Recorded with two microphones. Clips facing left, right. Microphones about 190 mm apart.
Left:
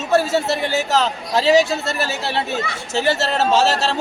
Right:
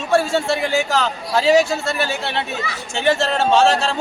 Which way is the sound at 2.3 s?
35° left (ahead or behind).